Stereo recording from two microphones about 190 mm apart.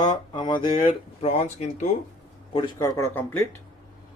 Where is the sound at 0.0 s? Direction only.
25° left (ahead or behind).